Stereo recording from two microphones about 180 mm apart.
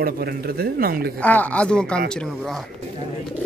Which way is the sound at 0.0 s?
60° right (ahead or behind).